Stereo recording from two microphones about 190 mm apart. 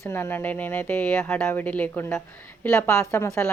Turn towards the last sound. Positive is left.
turn(degrees=15)  # may be behind; listen again after turning